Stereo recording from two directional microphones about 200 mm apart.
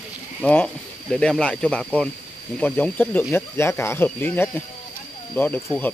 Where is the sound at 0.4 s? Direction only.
10° left (ahead or behind).